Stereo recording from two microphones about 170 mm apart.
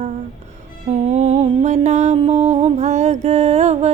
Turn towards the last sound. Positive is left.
turn(degrees=-40)  # may be behind; listen again after turning